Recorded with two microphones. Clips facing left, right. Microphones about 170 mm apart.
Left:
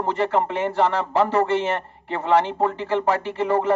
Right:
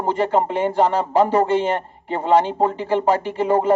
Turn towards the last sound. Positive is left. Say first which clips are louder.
# right 3 dB
turn(degrees=-15)  # may be behind; listen again after turning